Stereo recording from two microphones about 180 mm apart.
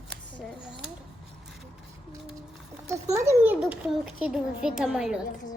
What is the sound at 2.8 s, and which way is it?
A child's voice, 15° right (ahead or behind).